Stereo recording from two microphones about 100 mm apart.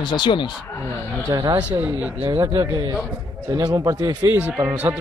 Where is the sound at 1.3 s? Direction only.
40° right (ahead or behind).